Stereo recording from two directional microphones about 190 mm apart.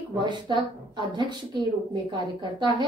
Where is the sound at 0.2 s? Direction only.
25° right (ahead or behind).